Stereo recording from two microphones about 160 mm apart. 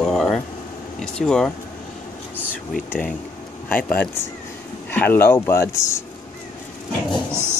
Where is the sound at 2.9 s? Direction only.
5° left (ahead or behind).